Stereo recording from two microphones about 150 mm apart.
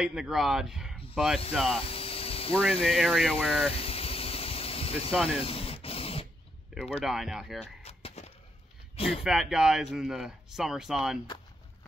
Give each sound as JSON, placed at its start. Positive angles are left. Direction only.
{"t": 0.0, "sound": "speech", "side_deg": -5}
{"t": 1.8, "sound": "hum", "side_deg": 40}
{"t": 2.8, "sound": "speech", "side_deg": 0}
{"t": 3.7, "sound": "air conditioning", "side_deg": 40}
{"t": 5.1, "sound": "speech", "side_deg": 0}
{"t": 5.4, "sound": "a sound", "side_deg": 40}
{"t": 6.7, "sound": "a sound", "side_deg": -5}
{"t": 7.1, "sound": "speech", "side_deg": -5}
{"t": 7.6, "sound": "a sound", "side_deg": 45}
{"t": 9.2, "sound": "speech", "side_deg": -5}